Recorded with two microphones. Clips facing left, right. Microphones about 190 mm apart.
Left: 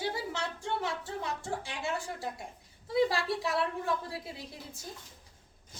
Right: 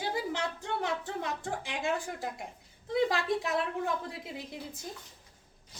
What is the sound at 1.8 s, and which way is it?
A woman's voice, 20° right (ahead or behind).